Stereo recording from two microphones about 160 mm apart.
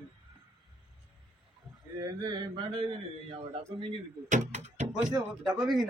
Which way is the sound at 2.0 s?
30° right (ahead or behind).